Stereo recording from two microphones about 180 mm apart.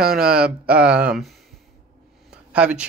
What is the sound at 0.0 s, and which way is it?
Speech, 55° right (ahead or behind).